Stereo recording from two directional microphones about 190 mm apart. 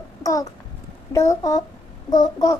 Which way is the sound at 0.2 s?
20° left (ahead or behind).